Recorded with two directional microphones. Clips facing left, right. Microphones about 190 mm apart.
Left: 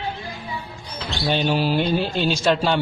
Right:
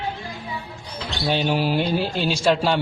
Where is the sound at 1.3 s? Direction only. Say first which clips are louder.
Left 1 dB; 10° right (ahead or behind).